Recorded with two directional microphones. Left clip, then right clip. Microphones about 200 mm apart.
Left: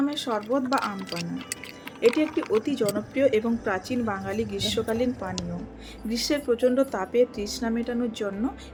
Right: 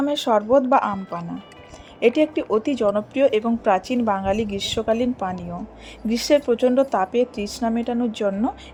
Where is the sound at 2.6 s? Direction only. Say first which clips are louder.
Right 6 dB; 30° right (ahead or behind).